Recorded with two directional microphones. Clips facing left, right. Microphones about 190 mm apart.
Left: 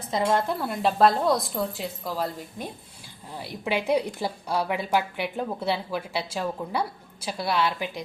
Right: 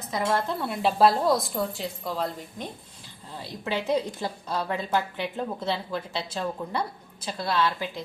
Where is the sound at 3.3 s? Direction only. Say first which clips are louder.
Left 2 dB; 15° left (ahead or behind).